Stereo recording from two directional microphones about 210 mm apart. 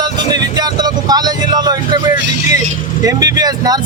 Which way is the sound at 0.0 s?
20° right (ahead or behind).